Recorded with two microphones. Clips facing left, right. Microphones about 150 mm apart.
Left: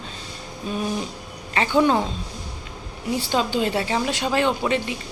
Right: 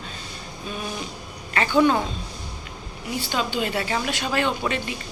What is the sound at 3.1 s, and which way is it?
Speech, 30° left (ahead or behind).